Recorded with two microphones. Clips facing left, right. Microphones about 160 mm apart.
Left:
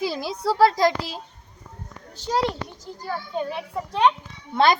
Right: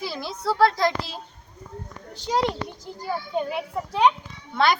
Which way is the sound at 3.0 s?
10° right (ahead or behind).